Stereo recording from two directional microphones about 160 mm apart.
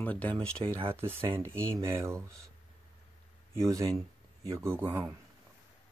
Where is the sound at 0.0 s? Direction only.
10° left (ahead or behind).